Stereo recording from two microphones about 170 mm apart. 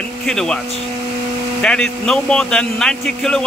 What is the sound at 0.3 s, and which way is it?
Speech, 5° left (ahead or behind).